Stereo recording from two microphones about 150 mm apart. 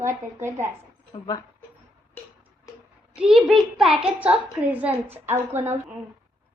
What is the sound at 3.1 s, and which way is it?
A child's voice, 5° right (ahead or behind).